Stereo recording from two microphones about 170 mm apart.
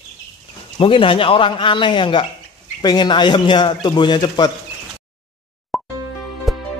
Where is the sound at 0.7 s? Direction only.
30° left (ahead or behind).